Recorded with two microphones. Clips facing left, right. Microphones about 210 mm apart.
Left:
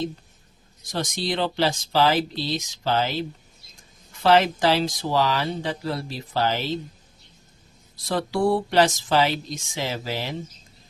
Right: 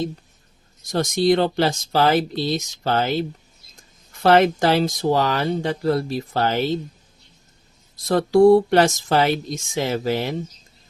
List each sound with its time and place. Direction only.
0.9 s speech: 50° right (ahead or behind)
8.0 s speech: 45° right (ahead or behind)